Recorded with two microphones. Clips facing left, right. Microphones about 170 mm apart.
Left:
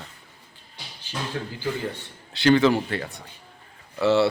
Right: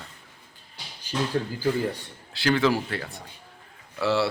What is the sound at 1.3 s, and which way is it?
Speech, 35° right (ahead or behind).